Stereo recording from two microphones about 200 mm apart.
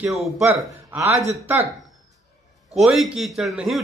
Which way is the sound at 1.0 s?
35° right (ahead or behind).